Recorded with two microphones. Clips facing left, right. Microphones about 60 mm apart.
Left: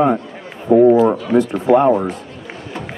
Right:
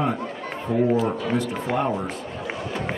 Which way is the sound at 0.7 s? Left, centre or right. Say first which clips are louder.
Left 12 dB; left.